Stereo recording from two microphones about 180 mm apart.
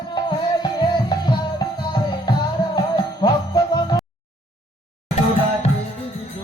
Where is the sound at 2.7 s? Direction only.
20° left (ahead or behind).